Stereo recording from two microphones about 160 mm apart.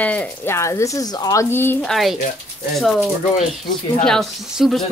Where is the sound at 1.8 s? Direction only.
Centre (ahead or behind).